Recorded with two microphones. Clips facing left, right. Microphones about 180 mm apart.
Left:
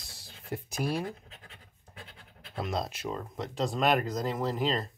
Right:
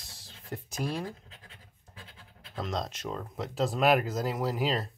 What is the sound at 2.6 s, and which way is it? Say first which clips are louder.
Speech: left 1 dB; 5° left (ahead or behind).